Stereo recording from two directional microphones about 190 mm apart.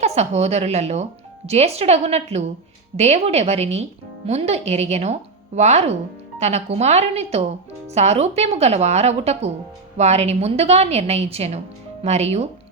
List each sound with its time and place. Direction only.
0.0 s speech: 35° right (ahead or behind)